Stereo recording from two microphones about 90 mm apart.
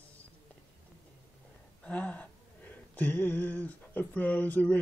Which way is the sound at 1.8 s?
15° left (ahead or behind).